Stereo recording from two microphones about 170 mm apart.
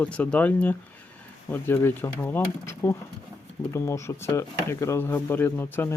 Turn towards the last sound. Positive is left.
turn(degrees=15)  # may be behind; listen again after turning